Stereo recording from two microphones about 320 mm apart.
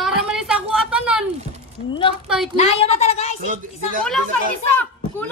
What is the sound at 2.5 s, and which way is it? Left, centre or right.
Speech, centre.